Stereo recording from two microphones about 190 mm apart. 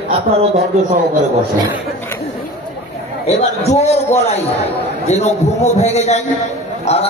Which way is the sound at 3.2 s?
35° left (ahead or behind).